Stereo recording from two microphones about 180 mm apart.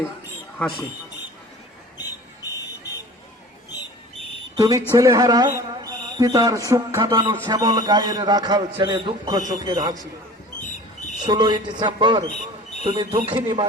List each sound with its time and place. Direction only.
2.4 s a sound: 20° left (ahead or behind)
4.5 s a man's voice: 20° right (ahead or behind)
11.3 s a man's voice: 25° right (ahead or behind)